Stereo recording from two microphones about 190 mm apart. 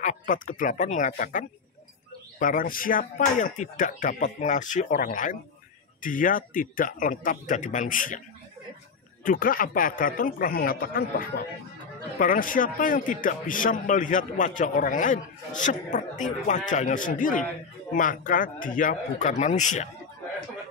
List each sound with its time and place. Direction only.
0.0 s a man's voice: 40° left (ahead or behind)
9.2 s a man's voice: 45° left (ahead or behind)